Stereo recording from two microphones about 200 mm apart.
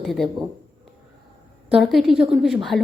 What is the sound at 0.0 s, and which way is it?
Speech, centre (ahead or behind).